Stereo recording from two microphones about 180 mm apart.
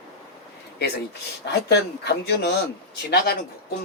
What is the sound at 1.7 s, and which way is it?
Speech, 65° left (ahead or behind).